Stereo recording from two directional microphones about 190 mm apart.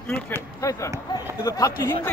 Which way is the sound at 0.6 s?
15° left (ahead or behind).